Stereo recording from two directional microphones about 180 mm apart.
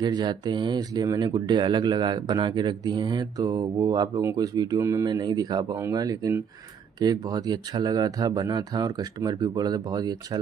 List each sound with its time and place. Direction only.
0.0 s speech: 25° right (ahead or behind)